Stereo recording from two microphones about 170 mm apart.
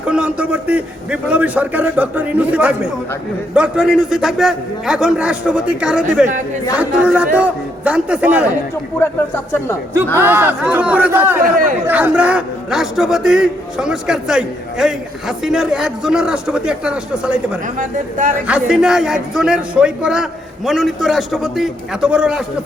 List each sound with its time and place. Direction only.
0.0 s a man's voice: 5° right (ahead or behind)
9.0 s speech: 15° left (ahead or behind)
10.2 s a man's voice: 10° right (ahead or behind)
11.4 s speech: 55° right (ahead or behind)
11.9 s a man's voice: 10° right (ahead or behind)
17.7 s speech: 50° right (ahead or behind)
18.4 s a man's voice: 5° right (ahead or behind)